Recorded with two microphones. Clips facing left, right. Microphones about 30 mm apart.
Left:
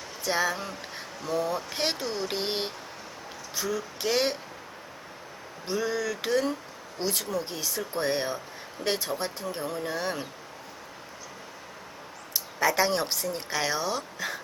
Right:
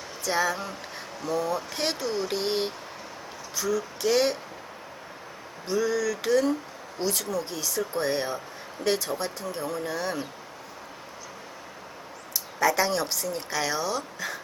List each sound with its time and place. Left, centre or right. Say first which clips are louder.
0.3 s speech: right 1 dB; centre
5.6 s speech: right 3 dB; centre
12.3 s speech: right 2 dB; left